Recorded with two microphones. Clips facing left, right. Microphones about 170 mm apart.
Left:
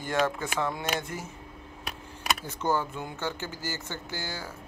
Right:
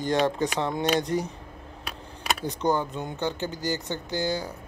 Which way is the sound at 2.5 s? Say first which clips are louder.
Right 5 dB; 15° right (ahead or behind).